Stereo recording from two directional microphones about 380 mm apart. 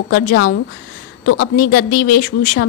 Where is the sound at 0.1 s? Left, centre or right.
Left.